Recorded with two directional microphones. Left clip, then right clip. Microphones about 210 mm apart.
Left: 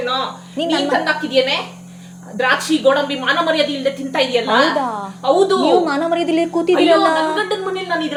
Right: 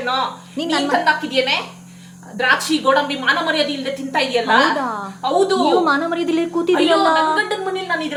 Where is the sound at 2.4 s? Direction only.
15° right (ahead or behind).